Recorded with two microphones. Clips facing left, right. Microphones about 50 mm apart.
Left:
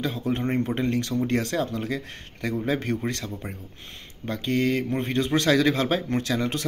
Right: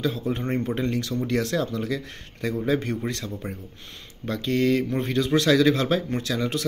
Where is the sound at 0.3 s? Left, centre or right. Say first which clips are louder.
Left 1 dB; left.